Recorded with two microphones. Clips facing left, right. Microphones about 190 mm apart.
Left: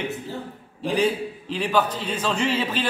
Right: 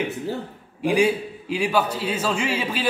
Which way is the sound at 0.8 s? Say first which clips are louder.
Right 3 dB; 10° right (ahead or behind).